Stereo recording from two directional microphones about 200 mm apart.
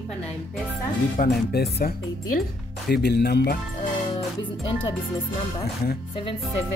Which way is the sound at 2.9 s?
55° left (ahead or behind).